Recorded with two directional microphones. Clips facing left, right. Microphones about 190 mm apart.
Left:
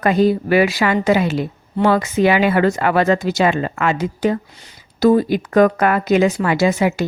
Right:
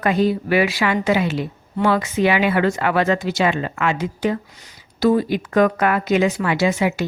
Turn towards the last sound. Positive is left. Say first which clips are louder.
# left 3 dB
turn(degrees=40)  # may be behind; listen again after turning